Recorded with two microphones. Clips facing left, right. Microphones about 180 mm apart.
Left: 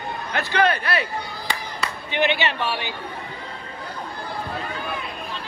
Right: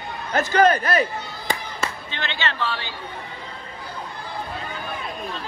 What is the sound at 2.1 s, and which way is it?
Speech, 15° left (ahead or behind).